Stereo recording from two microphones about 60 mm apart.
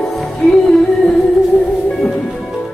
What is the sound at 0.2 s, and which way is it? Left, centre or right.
Music, centre.